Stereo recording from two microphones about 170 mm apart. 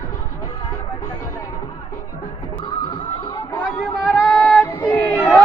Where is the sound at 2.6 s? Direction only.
30° left (ahead or behind).